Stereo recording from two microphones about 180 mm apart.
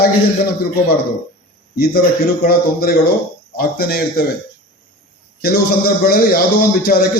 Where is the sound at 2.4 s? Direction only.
55° left (ahead or behind).